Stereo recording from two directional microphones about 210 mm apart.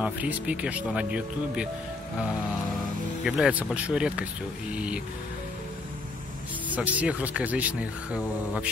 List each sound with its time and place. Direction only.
0.0 s speech: 5° right (ahead or behind)
3.3 s speech: 5° right (ahead or behind)
6.7 s speech: 5° right (ahead or behind)